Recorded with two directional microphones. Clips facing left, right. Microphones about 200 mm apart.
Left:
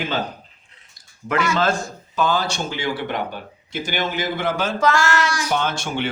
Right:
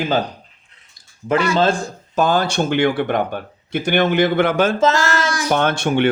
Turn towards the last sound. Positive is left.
turn(degrees=-60)  # may be behind; listen again after turning